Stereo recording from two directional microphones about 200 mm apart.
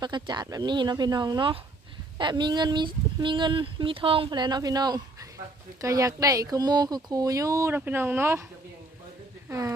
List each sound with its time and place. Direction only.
0.0 s speech: 20° right (ahead or behind)
9.5 s speech: 15° right (ahead or behind)